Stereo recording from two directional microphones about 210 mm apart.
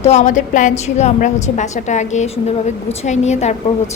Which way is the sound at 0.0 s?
35° left (ahead or behind).